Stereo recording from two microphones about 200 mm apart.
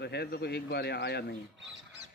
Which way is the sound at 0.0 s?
55° left (ahead or behind).